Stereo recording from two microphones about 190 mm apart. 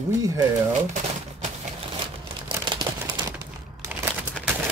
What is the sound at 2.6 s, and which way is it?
Crumpling, 25° right (ahead or behind).